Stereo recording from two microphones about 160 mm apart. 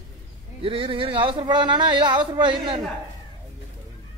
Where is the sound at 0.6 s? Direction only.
35° right (ahead or behind).